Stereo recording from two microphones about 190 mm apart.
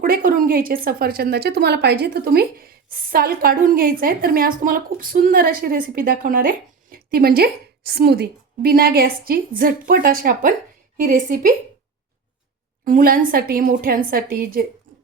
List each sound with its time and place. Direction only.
0.0 s a woman's voice: 45° right (ahead or behind)
12.8 s a woman's voice: 45° right (ahead or behind)